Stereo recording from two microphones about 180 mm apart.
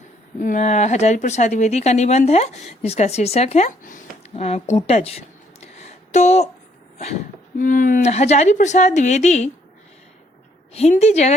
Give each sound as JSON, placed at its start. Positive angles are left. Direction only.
{"t": 0.3, "sound": "speech", "side_deg": 45}
{"t": 7.6, "sound": "speech", "side_deg": 50}
{"t": 10.8, "sound": "speech", "side_deg": 35}